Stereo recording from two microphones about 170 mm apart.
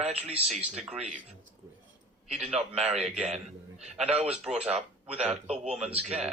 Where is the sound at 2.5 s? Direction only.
40° right (ahead or behind).